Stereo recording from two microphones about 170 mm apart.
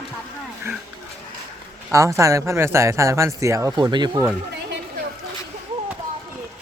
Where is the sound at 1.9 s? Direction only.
15° right (ahead or behind).